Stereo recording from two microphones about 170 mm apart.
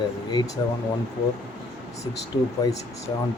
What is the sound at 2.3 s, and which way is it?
Speech, 25° left (ahead or behind).